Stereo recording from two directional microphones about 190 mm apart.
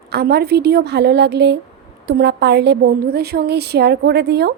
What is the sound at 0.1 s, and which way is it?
Speech, 55° right (ahead or behind).